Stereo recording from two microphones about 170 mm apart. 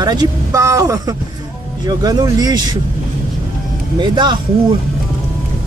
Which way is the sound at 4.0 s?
25° right (ahead or behind).